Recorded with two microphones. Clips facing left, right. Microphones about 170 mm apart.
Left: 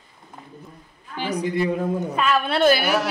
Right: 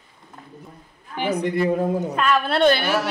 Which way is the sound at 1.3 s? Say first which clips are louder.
Right 1 dB; 55° right (ahead or behind).